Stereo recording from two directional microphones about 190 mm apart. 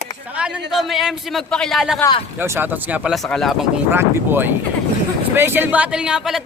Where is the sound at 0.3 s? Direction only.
5° right (ahead or behind).